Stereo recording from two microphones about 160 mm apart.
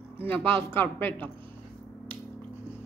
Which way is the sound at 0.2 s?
10° left (ahead or behind).